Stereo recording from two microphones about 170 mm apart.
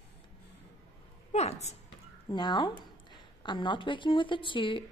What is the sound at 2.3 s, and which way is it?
A woman's voice, 25° left (ahead or behind).